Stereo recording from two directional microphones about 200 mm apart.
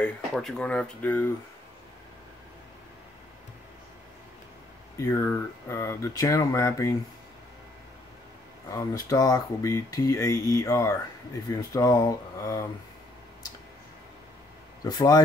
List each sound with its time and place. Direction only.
0.0 s speech: centre (ahead or behind)
4.9 s speech: 15° left (ahead or behind)
8.6 s speech: 15° left (ahead or behind)
14.8 s speech: 20° left (ahead or behind)